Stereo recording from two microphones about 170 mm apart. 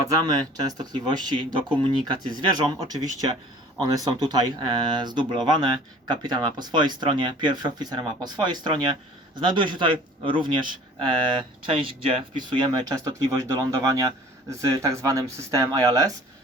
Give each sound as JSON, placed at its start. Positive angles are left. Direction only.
{"t": 0.1, "sound": "speech", "side_deg": -25}